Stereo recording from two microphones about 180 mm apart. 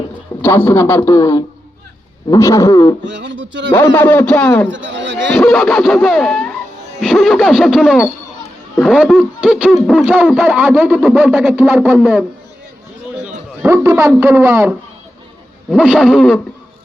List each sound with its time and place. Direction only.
0.4 s a man's voice: 15° left (ahead or behind)
3.1 s speech: 85° right
3.7 s a man's voice: 10° left (ahead or behind)
4.7 s a man's voice: 90° right
5.3 s hoot: centre (ahead or behind)
13.2 s a sound: 15° right (ahead or behind)
14.2 s speech: 15° right (ahead or behind)
15.7 s hoot: 5° right (ahead or behind)